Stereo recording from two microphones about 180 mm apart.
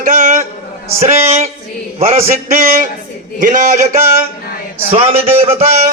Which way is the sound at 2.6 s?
40° right (ahead or behind).